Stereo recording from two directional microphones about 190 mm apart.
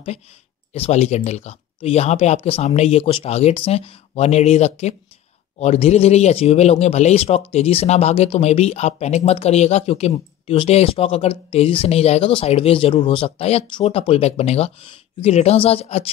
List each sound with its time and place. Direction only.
0.7 s a man's voice: 35° left (ahead or behind)